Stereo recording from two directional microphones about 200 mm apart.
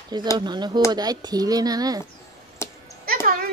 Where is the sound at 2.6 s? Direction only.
15° left (ahead or behind).